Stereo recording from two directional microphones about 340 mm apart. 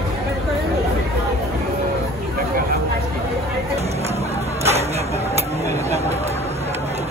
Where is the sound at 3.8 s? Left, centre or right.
Centre.